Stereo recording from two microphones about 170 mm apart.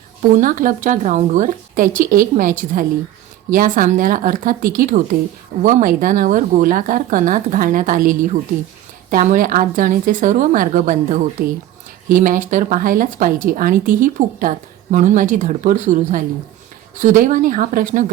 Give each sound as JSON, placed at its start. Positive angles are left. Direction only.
{"t": 0.2, "sound": "speech", "side_deg": -50}